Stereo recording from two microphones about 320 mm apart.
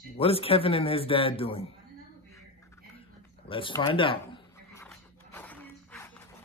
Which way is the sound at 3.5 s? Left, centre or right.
Centre.